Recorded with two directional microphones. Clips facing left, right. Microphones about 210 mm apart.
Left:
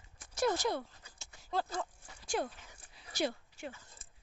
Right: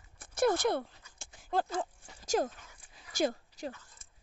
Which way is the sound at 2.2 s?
45° right (ahead or behind).